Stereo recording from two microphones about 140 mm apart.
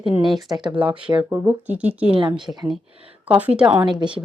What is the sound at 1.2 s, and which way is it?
Speech, 15° right (ahead or behind).